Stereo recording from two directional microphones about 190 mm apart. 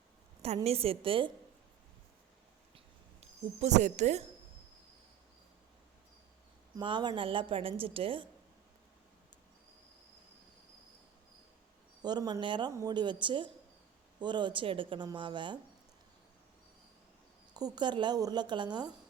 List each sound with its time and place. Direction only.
0.4 s a woman's voice: 35° right (ahead or behind)
2.7 s a sound: 35° right (ahead or behind)
6.7 s a woman's voice: 25° right (ahead or behind)
12.0 s a woman's voice: 20° right (ahead or behind)
17.5 s a woman's voice: 20° right (ahead or behind)